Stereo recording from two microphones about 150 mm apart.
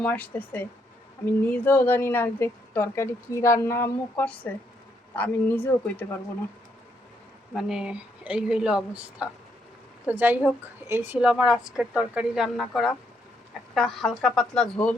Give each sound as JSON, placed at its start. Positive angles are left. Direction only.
{"t": 0.0, "sound": "speech", "side_deg": 10}
{"t": 7.5, "sound": "a woman's voice", "side_deg": -5}